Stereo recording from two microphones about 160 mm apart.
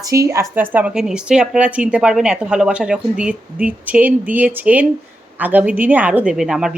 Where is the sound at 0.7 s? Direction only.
5° right (ahead or behind).